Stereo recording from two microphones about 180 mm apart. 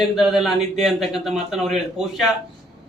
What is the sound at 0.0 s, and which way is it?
A man's voice, centre (ahead or behind).